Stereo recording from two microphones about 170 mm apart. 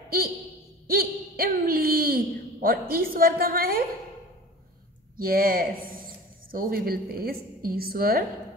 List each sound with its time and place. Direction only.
0.8 s speech: 60° right (ahead or behind)
5.1 s speech: 60° right (ahead or behind)